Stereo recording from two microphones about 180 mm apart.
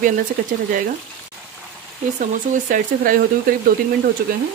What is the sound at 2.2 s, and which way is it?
A woman's voice, 45° right (ahead or behind).